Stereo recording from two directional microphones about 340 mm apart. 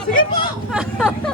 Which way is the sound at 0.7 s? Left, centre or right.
Centre.